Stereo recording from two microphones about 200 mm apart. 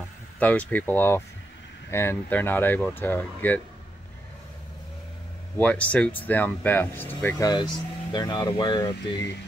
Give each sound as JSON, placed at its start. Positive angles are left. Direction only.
{"t": 0.4, "sound": "speech", "side_deg": 10}
{"t": 5.6, "sound": "speech", "side_deg": 5}